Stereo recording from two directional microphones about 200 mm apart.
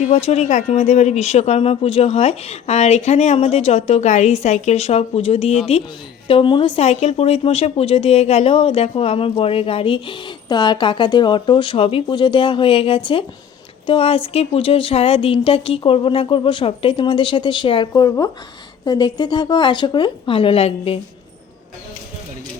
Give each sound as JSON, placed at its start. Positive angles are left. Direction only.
{"t": 0.0, "sound": "speech", "side_deg": 35}